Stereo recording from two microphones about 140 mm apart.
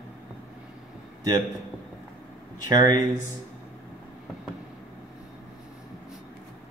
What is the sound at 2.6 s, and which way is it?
Speech, 25° right (ahead or behind).